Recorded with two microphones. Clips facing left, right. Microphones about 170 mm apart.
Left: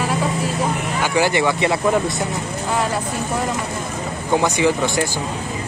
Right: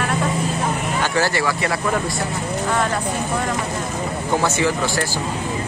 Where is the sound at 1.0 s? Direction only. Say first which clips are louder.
Left 4 dB; 15° left (ahead or behind).